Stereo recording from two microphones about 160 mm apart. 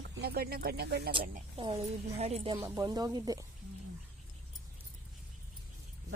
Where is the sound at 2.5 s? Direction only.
20° right (ahead or behind).